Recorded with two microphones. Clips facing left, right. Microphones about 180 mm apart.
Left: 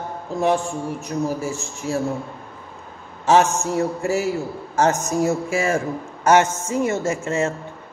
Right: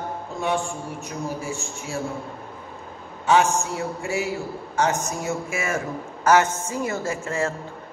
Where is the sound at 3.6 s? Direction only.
40° left (ahead or behind); by 7.5 s 25° left (ahead or behind).